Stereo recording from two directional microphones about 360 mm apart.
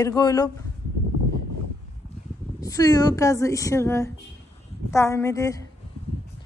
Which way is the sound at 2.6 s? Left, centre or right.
Centre.